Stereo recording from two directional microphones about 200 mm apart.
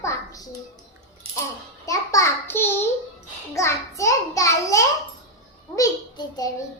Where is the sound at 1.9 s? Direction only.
15° left (ahead or behind).